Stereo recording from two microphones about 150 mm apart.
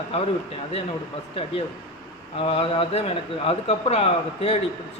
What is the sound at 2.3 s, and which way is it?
A man's voice, 40° left (ahead or behind).